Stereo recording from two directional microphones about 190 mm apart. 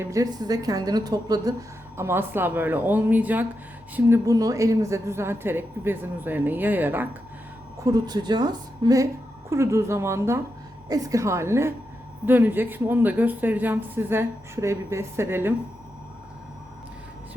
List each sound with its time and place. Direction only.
0.0 s a woman's voice: 15° right (ahead or behind)
7.9 s a woman's voice: 20° right (ahead or behind)